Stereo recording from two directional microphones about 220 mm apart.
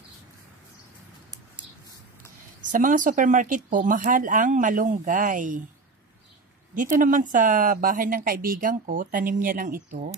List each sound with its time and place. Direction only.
2.7 s speech: 35° right (ahead or behind)
6.7 s speech: 35° right (ahead or behind)